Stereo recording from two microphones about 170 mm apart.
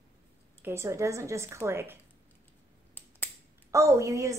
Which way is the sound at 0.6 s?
15° right (ahead or behind).